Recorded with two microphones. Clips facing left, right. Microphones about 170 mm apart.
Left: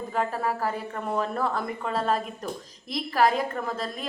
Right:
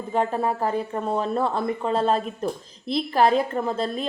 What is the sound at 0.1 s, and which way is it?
A woman's voice, 25° right (ahead or behind).